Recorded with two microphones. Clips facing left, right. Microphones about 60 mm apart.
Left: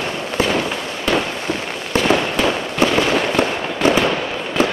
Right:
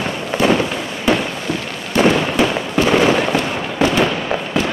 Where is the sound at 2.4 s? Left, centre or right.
Centre.